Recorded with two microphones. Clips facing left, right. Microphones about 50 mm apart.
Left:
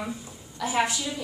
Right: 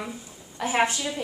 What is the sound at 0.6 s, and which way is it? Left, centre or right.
Speech, right.